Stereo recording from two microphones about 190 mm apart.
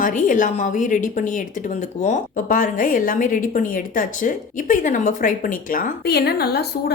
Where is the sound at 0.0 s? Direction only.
40° left (ahead or behind).